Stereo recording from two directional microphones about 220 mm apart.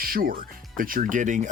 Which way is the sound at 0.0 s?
40° right (ahead or behind).